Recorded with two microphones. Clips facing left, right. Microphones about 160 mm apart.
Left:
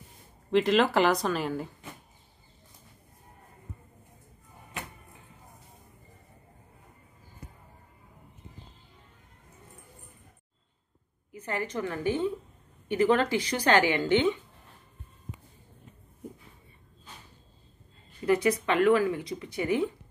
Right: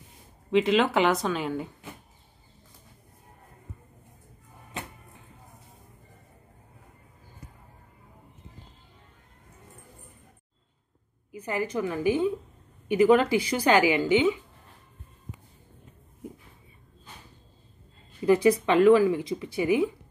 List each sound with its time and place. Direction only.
0.5 s speech: centre (ahead or behind)
11.3 s speech: 10° right (ahead or behind)
18.2 s speech: 25° right (ahead or behind)